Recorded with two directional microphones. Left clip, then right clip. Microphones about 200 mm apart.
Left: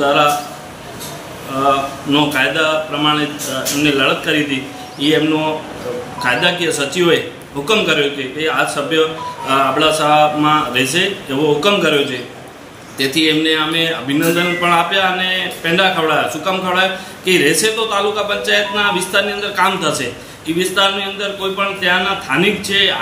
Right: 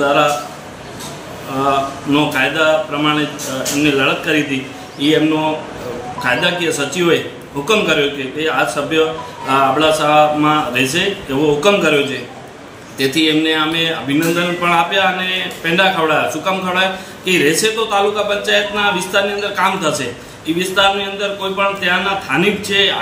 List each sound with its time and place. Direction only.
0.0 s speech: centre (ahead or behind)
1.6 s speech: centre (ahead or behind)